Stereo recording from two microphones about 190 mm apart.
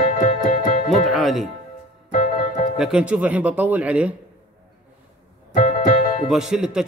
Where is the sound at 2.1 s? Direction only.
45° left (ahead or behind).